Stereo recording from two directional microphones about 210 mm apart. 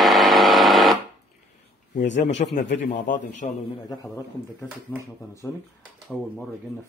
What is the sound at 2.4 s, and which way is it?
Speech, 35° left (ahead or behind).